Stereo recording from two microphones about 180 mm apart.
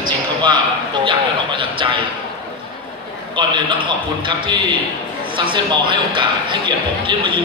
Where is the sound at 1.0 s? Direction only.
30° right (ahead or behind).